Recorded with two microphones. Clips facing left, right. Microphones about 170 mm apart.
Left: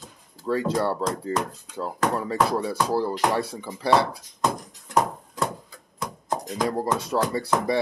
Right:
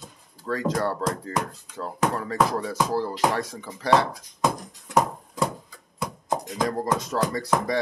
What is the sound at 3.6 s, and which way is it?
Speech, 20° left (ahead or behind).